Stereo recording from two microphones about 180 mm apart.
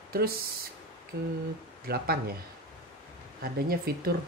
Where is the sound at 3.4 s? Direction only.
55° right (ahead or behind).